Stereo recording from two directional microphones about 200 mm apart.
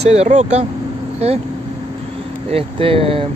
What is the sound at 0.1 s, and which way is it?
Speech, 35° right (ahead or behind).